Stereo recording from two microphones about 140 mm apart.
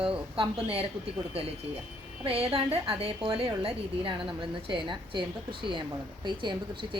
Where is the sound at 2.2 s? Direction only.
45° right (ahead or behind).